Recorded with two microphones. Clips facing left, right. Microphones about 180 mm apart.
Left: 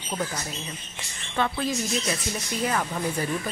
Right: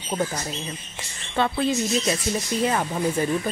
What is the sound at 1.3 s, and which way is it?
Speech, 30° right (ahead or behind).